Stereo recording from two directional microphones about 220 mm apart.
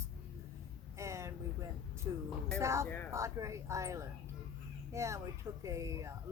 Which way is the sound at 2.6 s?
15° right (ahead or behind).